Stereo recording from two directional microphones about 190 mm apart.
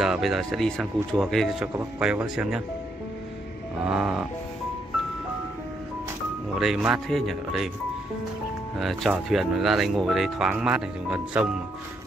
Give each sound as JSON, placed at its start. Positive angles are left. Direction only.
{"t": 0.0, "sound": "speech", "side_deg": 0}
{"t": 3.8, "sound": "speech", "side_deg": -5}
{"t": 6.6, "sound": "speech", "side_deg": -5}
{"t": 8.7, "sound": "speech", "side_deg": 0}